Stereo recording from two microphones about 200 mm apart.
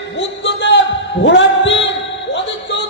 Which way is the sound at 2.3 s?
65° left (ahead or behind).